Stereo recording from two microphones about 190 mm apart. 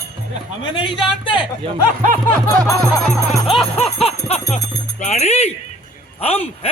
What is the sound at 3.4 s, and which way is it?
Speech, 30° left (ahead or behind).